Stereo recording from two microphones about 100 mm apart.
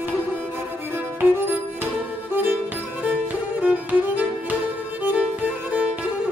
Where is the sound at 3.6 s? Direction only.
15° right (ahead or behind).